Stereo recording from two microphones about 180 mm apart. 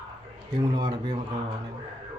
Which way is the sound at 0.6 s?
25° right (ahead or behind).